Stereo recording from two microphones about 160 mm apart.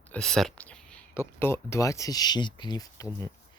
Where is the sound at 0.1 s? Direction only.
Centre (ahead or behind).